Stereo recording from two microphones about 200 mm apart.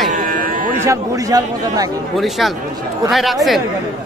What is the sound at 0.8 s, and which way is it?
Speech, 15° right (ahead or behind).